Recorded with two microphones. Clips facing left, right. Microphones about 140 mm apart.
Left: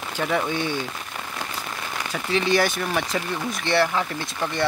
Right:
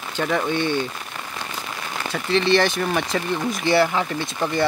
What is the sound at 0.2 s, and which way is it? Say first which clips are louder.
Speech: right 2 dB; 10° left (ahead or behind).